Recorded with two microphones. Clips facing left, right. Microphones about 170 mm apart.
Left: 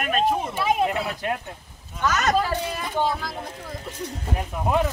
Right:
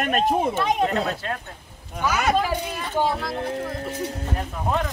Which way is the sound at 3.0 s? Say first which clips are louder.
Right 2 dB; centre (ahead or behind).